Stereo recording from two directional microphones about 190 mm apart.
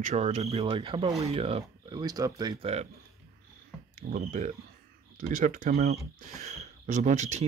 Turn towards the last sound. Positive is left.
turn(degrees=-35)  # may be behind; listen again after turning